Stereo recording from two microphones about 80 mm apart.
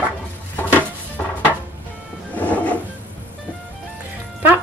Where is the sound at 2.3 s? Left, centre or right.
Centre.